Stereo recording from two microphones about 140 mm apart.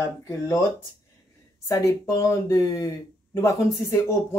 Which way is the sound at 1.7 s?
20° left (ahead or behind).